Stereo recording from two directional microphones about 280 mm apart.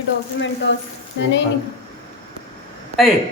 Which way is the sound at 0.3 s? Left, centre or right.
Left.